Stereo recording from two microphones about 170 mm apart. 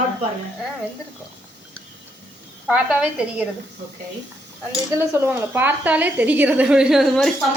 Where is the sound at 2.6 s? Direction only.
5° right (ahead or behind).